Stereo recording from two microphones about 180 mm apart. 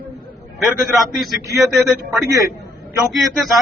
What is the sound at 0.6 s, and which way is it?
Speech, centre (ahead or behind).